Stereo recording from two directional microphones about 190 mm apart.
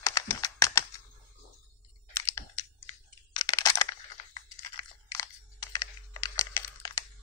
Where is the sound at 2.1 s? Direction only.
15° left (ahead or behind).